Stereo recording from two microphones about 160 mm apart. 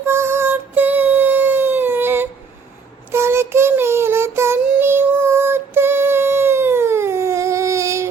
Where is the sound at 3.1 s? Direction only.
15° right (ahead or behind).